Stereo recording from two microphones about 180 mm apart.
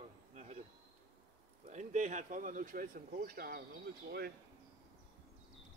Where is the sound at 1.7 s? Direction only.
45° right (ahead or behind); by 4.3 s 60° right (ahead or behind).